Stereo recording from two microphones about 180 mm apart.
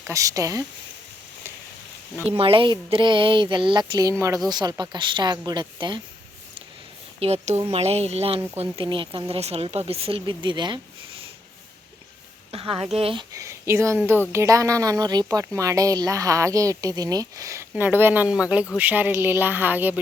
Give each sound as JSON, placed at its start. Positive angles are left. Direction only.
{"t": 0.1, "sound": "speech", "side_deg": -20}
{"t": 2.1, "sound": "a woman's voice", "side_deg": -10}
{"t": 2.4, "sound": "speech", "side_deg": -30}
{"t": 7.2, "sound": "speech", "side_deg": -35}
{"t": 12.5, "sound": "speech", "side_deg": -30}
{"t": 13.3, "sound": "a woman's voice", "side_deg": -15}